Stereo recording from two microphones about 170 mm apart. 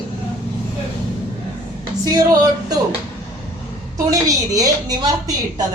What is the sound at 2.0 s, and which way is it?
Speech, 20° right (ahead or behind).